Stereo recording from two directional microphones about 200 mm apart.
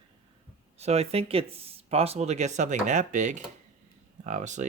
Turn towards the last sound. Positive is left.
turn(degrees=-35)  # may be behind; listen again after turning